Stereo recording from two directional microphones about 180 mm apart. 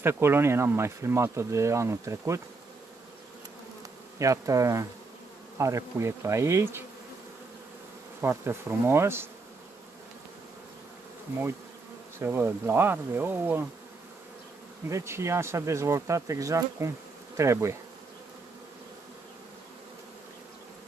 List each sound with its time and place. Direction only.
0.0 s speech: 15° right (ahead or behind)
4.2 s speech: 20° right (ahead or behind)
8.2 s speech: 10° right (ahead or behind)
12.2 s speech: 15° right (ahead or behind)
14.9 s speech: 15° right (ahead or behind)